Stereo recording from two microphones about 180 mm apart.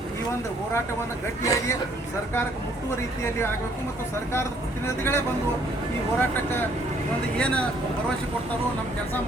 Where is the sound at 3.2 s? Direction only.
15° left (ahead or behind).